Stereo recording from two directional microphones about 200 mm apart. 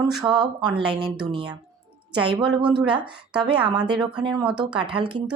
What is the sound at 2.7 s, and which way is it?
Speech, 25° right (ahead or behind).